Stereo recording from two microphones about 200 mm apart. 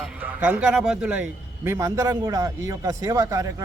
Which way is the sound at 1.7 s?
15° right (ahead or behind).